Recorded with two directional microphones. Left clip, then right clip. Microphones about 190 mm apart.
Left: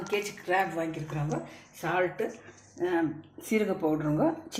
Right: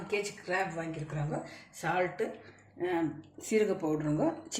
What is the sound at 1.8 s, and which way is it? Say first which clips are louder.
Speech: left 3 dB; 15° left (ahead or behind).